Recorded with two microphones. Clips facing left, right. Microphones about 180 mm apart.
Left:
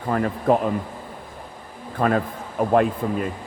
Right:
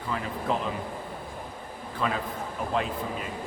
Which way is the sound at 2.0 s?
50° left (ahead or behind).